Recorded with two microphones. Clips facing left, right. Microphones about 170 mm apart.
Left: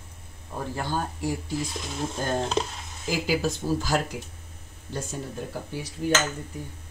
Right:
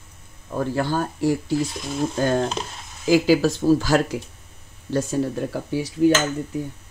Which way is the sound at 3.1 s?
90° right.